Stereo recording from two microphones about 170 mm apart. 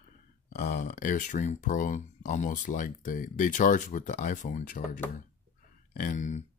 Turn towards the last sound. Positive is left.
turn(degrees=45)  # may be behind; listen again after turning